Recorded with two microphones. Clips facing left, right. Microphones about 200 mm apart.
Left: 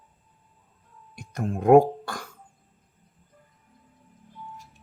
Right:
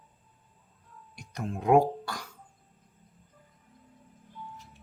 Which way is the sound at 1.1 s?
50° left (ahead or behind).